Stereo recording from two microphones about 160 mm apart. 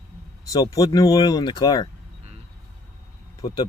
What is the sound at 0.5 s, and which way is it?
Speech, 20° left (ahead or behind).